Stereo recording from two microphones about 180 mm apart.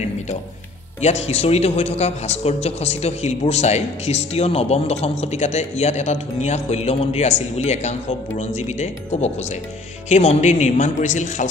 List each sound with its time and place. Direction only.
1.0 s a man's voice: 35° left (ahead or behind)